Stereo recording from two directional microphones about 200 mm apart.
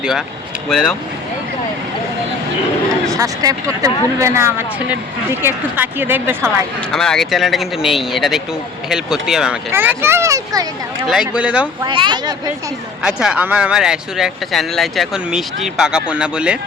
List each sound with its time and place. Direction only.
3.1 s speech: 15° right (ahead or behind)
6.9 s speech: 5° left (ahead or behind); by 10.7 s 15° right (ahead or behind)
11.1 s speech: 5° right (ahead or behind)
11.8 s speech: 25° right (ahead or behind)
13.0 s speech: centre (ahead or behind)